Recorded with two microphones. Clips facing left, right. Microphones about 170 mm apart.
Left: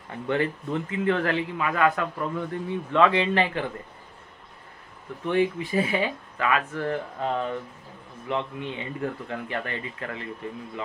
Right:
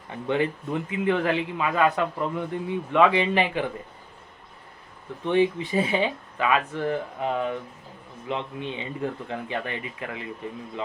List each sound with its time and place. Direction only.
0.3 s a man's voice: 15° right (ahead or behind)
5.2 s a man's voice: 20° right (ahead or behind)